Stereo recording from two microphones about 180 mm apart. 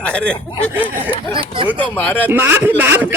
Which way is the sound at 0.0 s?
5° left (ahead or behind).